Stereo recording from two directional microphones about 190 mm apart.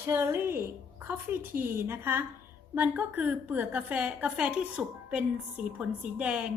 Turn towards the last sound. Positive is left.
turn(degrees=-5)  # may be behind; listen again after turning